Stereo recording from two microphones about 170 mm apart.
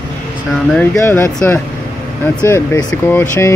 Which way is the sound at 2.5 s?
20° left (ahead or behind).